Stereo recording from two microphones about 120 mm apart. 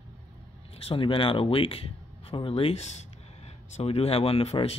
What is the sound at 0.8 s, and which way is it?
Speech, 50° left (ahead or behind).